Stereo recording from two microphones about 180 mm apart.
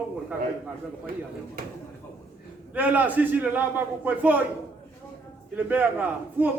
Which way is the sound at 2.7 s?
10° right (ahead or behind).